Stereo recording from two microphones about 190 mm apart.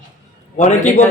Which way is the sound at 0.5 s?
40° left (ahead or behind).